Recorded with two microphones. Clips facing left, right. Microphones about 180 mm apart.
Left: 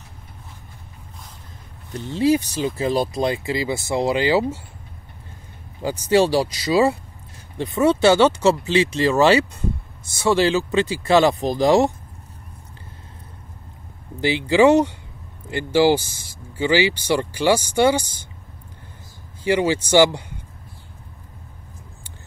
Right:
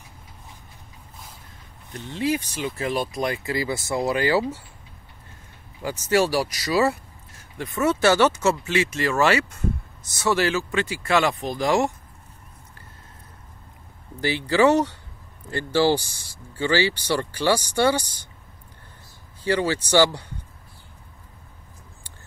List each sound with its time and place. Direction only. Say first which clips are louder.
2.0 s speech: left 7 dB; 35° left (ahead or behind)
5.8 s speech: left 4 dB; 25° left (ahead or behind)
14.2 s speech: left 4 dB; 20° left (ahead or behind)
16.5 s speech: left 3 dB; 10° left (ahead or behind)
19.4 s speech: left 4 dB; 15° left (ahead or behind)